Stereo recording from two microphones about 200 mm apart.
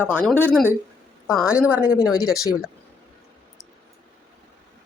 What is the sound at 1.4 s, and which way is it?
Speech, 5° right (ahead or behind).